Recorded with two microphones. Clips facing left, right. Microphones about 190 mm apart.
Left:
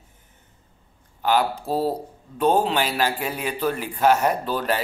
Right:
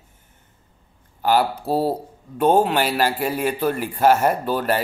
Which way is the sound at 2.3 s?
50° right (ahead or behind).